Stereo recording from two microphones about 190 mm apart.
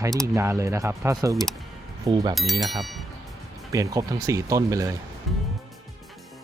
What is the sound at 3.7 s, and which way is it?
Speech, 15° right (ahead or behind).